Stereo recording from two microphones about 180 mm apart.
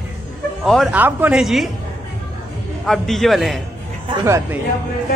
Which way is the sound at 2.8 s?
Centre (ahead or behind).